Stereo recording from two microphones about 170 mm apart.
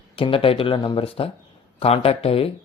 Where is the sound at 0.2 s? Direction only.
30° left (ahead or behind).